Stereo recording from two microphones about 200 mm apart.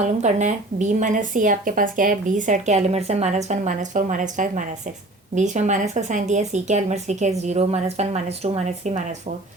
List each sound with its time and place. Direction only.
0.0 s speech: 35° right (ahead or behind)